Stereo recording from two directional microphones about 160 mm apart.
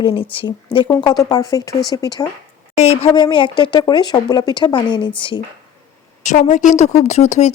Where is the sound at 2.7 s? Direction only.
40° left (ahead or behind).